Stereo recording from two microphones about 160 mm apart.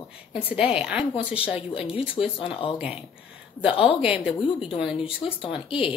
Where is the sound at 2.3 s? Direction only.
35° left (ahead or behind).